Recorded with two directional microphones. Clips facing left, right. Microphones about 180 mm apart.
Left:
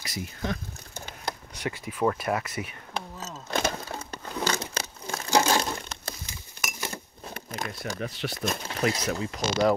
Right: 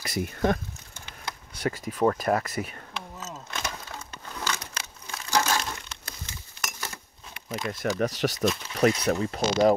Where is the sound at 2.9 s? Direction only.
35° left (ahead or behind).